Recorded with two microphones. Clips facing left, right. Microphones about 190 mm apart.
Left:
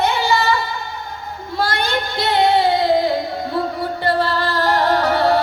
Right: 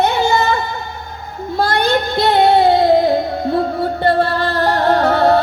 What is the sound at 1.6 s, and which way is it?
Music, 55° right (ahead or behind).